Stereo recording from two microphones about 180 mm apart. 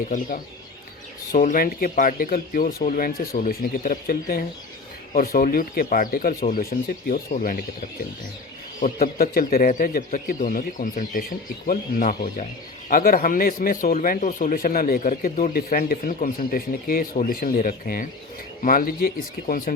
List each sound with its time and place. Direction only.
0.1 s speech: 50° left (ahead or behind)
8.8 s speech: 50° left (ahead or behind)